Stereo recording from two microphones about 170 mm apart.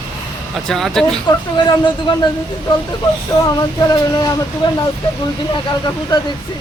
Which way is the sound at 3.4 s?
20° left (ahead or behind).